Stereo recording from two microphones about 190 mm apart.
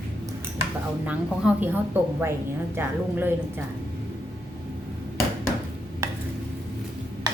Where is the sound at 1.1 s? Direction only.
5° right (ahead or behind).